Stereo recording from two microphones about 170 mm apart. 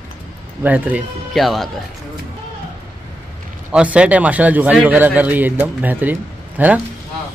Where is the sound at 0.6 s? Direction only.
10° right (ahead or behind).